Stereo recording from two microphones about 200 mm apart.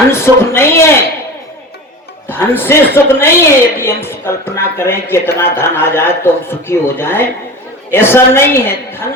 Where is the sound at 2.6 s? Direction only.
10° left (ahead or behind).